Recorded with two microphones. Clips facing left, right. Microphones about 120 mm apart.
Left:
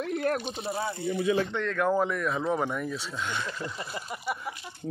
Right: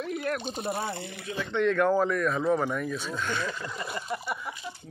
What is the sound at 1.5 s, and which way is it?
Speech, centre (ahead or behind).